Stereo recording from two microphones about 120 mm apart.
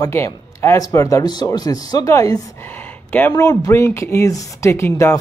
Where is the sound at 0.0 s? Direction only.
25° left (ahead or behind).